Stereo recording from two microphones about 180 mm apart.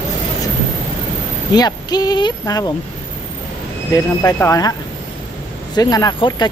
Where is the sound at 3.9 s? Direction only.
15° left (ahead or behind).